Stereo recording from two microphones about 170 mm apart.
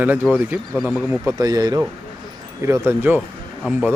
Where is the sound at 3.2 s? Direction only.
Centre (ahead or behind).